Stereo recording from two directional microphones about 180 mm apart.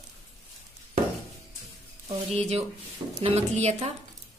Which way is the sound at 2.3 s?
35° right (ahead or behind).